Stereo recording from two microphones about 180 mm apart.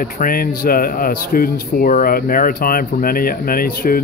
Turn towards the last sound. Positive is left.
turn(degrees=55)  # may be behind; listen again after turning